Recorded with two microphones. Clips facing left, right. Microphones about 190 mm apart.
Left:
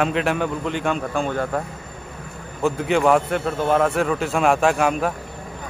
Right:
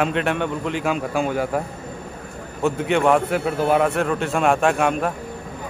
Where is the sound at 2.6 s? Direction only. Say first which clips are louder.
Even; centre (ahead or behind).